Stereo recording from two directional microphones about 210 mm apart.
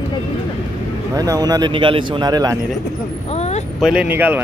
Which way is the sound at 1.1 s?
15° right (ahead or behind).